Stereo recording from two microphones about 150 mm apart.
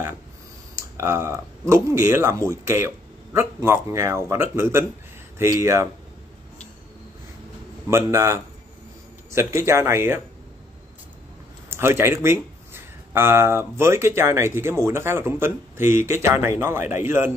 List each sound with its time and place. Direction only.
0.9 s a man's voice: 20° right (ahead or behind)
7.9 s a man's voice: 15° right (ahead or behind)
11.7 s a man's voice: 15° right (ahead or behind)